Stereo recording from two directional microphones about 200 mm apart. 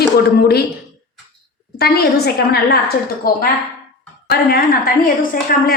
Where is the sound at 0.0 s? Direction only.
50° left (ahead or behind).